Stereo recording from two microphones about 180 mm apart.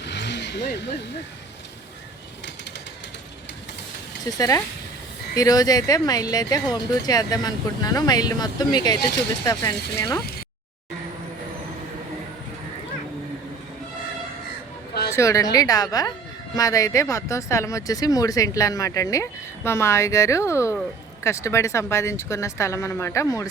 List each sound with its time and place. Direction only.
0.0 s vehicle: 75° left (ahead or behind)
4.3 s speech: 20° left (ahead or behind)
15.1 s speech: 15° left (ahead or behind)